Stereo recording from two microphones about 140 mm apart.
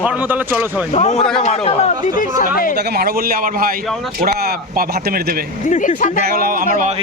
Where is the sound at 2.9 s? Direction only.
90° right.